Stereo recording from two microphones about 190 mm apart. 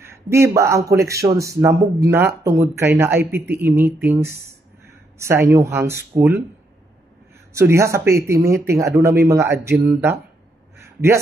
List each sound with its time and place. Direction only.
0.0 s speech: 15° right (ahead or behind)
7.5 s speech: 15° right (ahead or behind)